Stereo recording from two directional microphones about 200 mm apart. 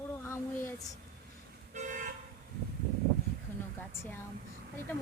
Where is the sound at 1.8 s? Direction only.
40° right (ahead or behind).